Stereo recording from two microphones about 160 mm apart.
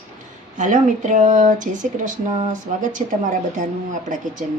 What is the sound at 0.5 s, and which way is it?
Speech, 50° right (ahead or behind).